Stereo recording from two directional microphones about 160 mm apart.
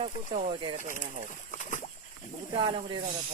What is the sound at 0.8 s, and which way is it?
Speech, 55° right (ahead or behind).